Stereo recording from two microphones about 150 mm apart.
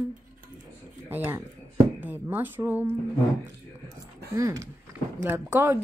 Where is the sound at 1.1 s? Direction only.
10° right (ahead or behind).